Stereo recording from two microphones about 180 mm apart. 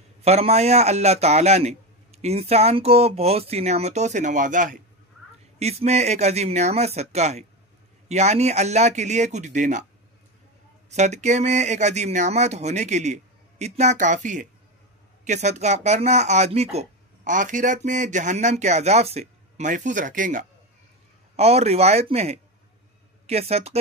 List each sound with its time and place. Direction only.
0.2 s speech: 35° right (ahead or behind)
10.9 s speech: 40° right (ahead or behind)
21.4 s speech: 35° right (ahead or behind)